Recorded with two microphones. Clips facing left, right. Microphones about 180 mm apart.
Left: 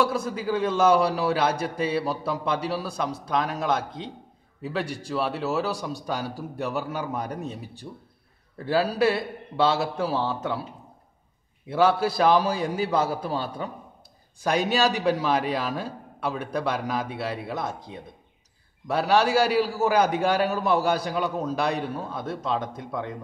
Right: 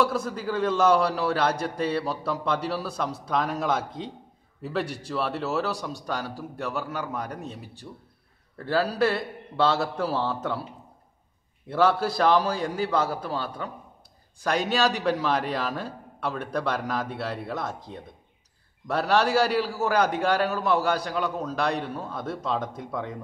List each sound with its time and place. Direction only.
0.0 s a man's voice: centre (ahead or behind)
11.6 s a man's voice: 5° left (ahead or behind)